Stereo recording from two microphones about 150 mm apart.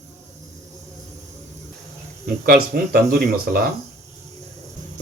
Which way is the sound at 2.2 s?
90° right.